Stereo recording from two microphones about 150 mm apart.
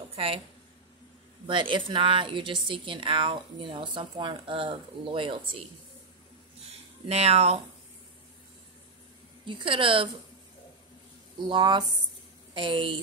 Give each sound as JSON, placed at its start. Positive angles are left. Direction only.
{"t": 0.1, "sound": "a sound", "side_deg": -40}
{"t": 1.5, "sound": "a woman's voice", "side_deg": -35}
{"t": 7.1, "sound": "speech", "side_deg": -45}
{"t": 9.5, "sound": "a woman's voice", "side_deg": -35}
{"t": 11.3, "sound": "a woman's voice", "side_deg": -30}